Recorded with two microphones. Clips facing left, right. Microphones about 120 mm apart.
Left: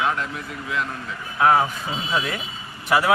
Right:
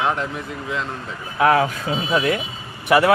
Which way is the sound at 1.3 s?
90° right.